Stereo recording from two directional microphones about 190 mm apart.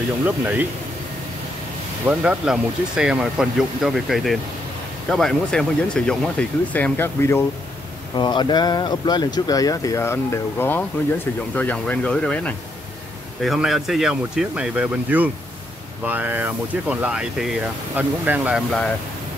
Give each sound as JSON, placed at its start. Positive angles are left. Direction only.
{"t": 0.2, "sound": "speech", "side_deg": -10}
{"t": 2.0, "sound": "speech", "side_deg": -5}
{"t": 8.2, "sound": "speech", "side_deg": 25}